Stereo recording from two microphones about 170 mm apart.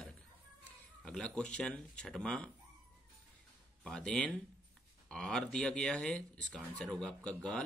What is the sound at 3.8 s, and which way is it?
Speech, 5° left (ahead or behind).